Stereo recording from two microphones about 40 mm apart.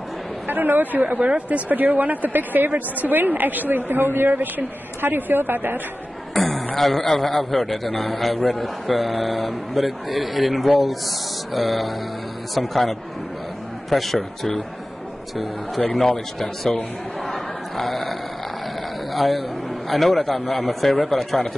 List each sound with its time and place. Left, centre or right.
0.5 s a woman's voice: right
1.0 s speech: right
1.7 s a woman's voice: right
6.3 s a sound: centre
6.8 s a man's voice: centre
15.9 s a man's voice: centre
17.3 s a sound: centre
19.1 s a man's voice: centre